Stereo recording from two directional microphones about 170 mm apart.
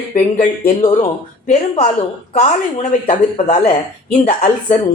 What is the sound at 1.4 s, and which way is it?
A woman's voice, 40° left (ahead or behind).